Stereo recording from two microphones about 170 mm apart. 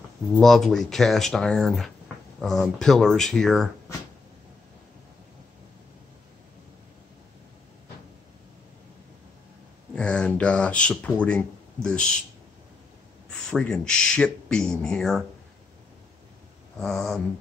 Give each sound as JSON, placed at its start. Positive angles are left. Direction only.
{"t": 0.3, "sound": "speech", "side_deg": 0}
{"t": 9.9, "sound": "speech", "side_deg": 5}
{"t": 13.3, "sound": "speech", "side_deg": 5}
{"t": 16.7, "sound": "speech", "side_deg": 0}